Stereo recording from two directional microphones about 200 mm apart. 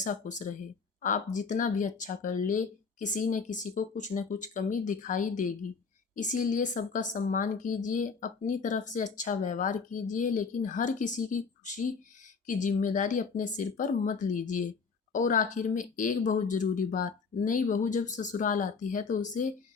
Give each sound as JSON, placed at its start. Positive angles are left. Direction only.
{"t": 0.0, "sound": "speech", "side_deg": 40}